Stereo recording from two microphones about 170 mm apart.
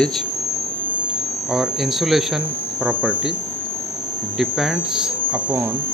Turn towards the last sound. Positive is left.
turn(degrees=0)  # may be behind; listen again after turning